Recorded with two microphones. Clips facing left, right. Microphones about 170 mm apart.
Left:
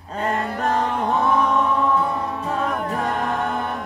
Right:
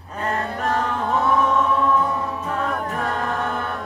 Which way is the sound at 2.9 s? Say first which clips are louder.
Left 2 dB; 20° left (ahead or behind).